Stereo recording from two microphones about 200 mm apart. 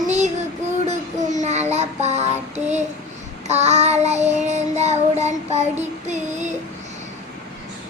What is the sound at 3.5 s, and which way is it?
Child singing, 35° right (ahead or behind).